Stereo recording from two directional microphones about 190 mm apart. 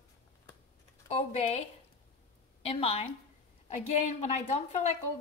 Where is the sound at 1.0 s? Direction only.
35° left (ahead or behind).